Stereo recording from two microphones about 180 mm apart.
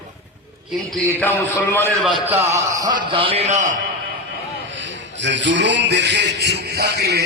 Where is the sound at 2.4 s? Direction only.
15° right (ahead or behind); by 3.8 s 40° right (ahead or behind).